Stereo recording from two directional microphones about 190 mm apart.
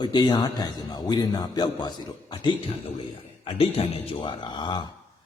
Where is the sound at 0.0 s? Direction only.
25° left (ahead or behind).